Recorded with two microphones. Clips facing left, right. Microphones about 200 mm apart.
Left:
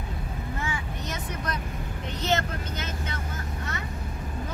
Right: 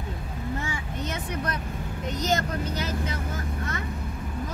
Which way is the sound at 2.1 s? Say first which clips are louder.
Right 1 dB; 40° right (ahead or behind).